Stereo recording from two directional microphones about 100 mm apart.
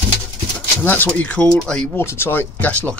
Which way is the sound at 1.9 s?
25° left (ahead or behind).